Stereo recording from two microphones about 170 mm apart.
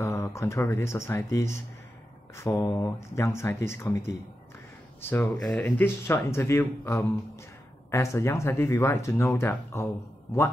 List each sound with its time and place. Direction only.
0.0 s speech: 15° left (ahead or behind)